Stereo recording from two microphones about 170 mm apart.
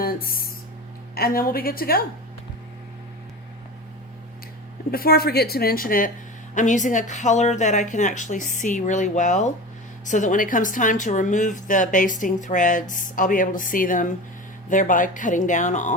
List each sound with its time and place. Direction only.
0.0 s a sound: 60° left (ahead or behind)
1.1 s a woman's voice: 60° left (ahead or behind)
4.9 s a woman's voice: 60° left (ahead or behind)
6.5 s a woman's voice: 45° left (ahead or behind)